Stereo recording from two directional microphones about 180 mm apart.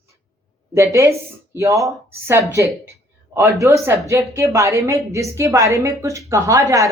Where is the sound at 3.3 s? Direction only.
15° right (ahead or behind).